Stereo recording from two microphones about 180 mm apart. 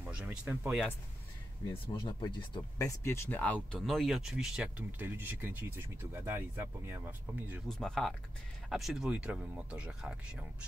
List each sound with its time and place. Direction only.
0.0 s speech: 5° right (ahead or behind)
2.0 s speech: 25° left (ahead or behind); by 7.6 s 10° right (ahead or behind)
7.6 s speech: 5° left (ahead or behind)